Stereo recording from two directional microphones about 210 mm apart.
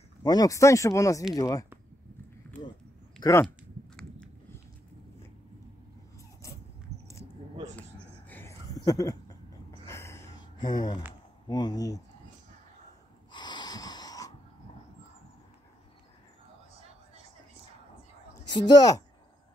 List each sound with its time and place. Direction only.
0.2 s speech: 20° left (ahead or behind)
3.2 s speech: 15° left (ahead or behind)
3.9 s a sound: 5° left (ahead or behind)
8.3 s a sound: 10° left (ahead or behind)
9.8 s gasp: 15° left (ahead or behind)
10.6 s a woman's voice: 20° left (ahead or behind)
13.3 s wheeze: 20° left (ahead or behind)
18.5 s a woman's voice: 20° left (ahead or behind)